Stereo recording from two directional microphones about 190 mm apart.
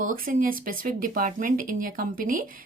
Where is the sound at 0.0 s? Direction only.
45° right (ahead or behind).